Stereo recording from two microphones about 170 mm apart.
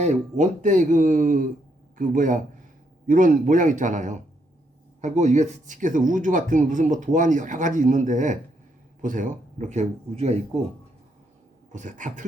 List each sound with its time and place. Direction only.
0.0 s speech: 45° right (ahead or behind)
11.7 s speech: 45° right (ahead or behind)